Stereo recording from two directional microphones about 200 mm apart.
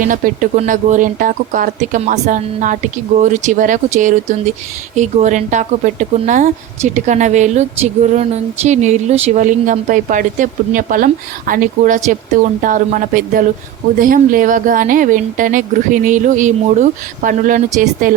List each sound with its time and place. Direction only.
0.0 s speech: 40° right (ahead or behind)